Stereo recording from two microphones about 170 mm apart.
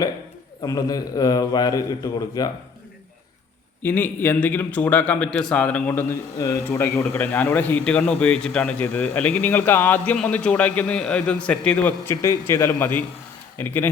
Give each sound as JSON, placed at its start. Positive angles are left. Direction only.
{"t": 0.6, "sound": "a man's voice", "side_deg": 20}
{"t": 3.8, "sound": "a man's voice", "side_deg": 10}
{"t": 5.9, "sound": "a man's voice", "side_deg": 20}